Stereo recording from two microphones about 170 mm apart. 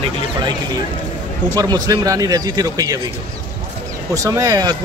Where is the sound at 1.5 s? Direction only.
20° right (ahead or behind).